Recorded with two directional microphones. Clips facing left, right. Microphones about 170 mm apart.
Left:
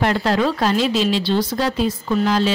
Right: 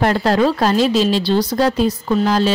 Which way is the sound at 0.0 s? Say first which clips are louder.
Right 3 dB; 40° right (ahead or behind).